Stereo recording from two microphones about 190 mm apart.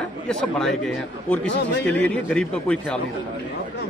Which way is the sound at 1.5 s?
65° left (ahead or behind).